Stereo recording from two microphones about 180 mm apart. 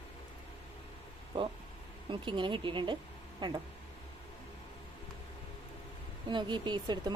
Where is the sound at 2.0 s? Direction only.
25° right (ahead or behind).